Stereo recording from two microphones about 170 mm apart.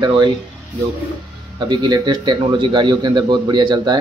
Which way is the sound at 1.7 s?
25° right (ahead or behind).